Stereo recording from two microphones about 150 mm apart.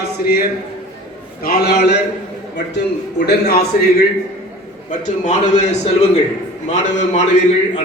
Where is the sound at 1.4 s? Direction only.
85° left.